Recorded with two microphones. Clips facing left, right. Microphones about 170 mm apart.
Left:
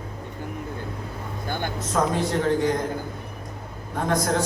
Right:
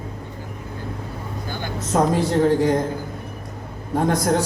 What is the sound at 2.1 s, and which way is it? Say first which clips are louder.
Speech: right 5 dB; 30° right (ahead or behind).